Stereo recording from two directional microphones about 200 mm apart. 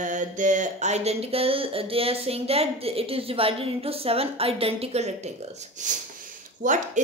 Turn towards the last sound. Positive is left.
turn(degrees=-40)  # may be behind; listen again after turning